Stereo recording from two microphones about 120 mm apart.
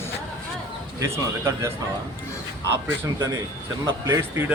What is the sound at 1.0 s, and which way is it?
Speech, 20° right (ahead or behind).